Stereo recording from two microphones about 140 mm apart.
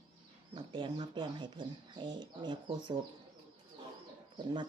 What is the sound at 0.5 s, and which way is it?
Speech, 35° right (ahead or behind).